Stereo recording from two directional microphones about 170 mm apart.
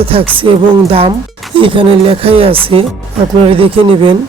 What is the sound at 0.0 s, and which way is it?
Speech, 35° right (ahead or behind).